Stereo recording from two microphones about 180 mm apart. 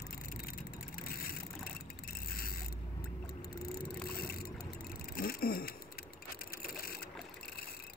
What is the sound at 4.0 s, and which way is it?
Boat, 55° left (ahead or behind).